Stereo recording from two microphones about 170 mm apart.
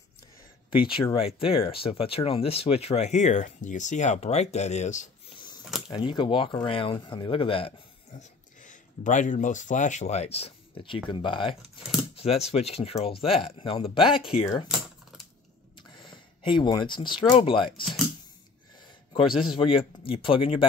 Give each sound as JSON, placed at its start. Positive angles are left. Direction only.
{"t": 0.7, "sound": "speech", "side_deg": 30}
{"t": 5.3, "sound": "a sound", "side_deg": 25}
{"t": 5.9, "sound": "speech", "side_deg": 25}
{"t": 15.9, "sound": "a sound", "side_deg": 30}
{"t": 16.5, "sound": "speech", "side_deg": 25}
{"t": 19.1, "sound": "speech", "side_deg": 30}